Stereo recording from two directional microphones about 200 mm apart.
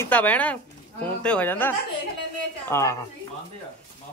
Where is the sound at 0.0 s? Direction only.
10° left (ahead or behind).